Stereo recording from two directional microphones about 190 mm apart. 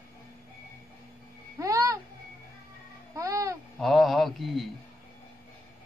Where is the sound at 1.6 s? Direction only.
15° right (ahead or behind).